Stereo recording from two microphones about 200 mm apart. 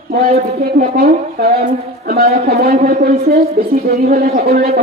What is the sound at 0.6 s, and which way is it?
A man's voice, 50° right (ahead or behind).